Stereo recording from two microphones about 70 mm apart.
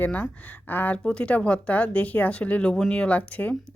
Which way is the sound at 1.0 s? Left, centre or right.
Centre.